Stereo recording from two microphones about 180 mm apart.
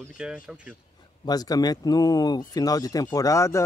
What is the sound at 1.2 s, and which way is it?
Speech, 20° left (ahead or behind).